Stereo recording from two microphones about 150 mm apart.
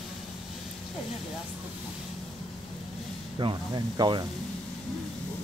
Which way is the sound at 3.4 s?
30° right (ahead or behind).